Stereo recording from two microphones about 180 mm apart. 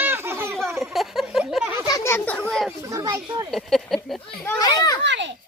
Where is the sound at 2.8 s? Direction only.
20° right (ahead or behind).